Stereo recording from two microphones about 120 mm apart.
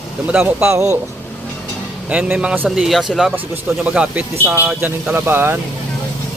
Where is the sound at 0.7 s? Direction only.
25° right (ahead or behind).